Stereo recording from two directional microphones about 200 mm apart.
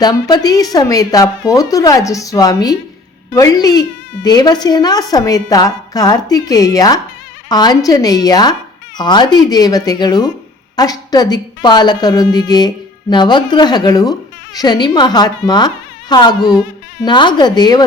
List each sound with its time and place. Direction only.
0.0 s a woman's voice: 20° left (ahead or behind)